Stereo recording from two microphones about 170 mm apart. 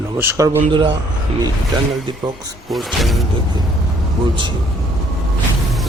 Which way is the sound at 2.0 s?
25° right (ahead or behind).